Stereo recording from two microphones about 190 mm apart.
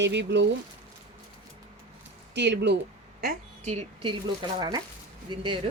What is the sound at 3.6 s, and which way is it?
Speech, 35° right (ahead or behind).